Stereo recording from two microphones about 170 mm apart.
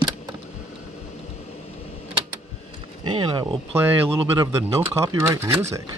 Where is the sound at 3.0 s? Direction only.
30° right (ahead or behind).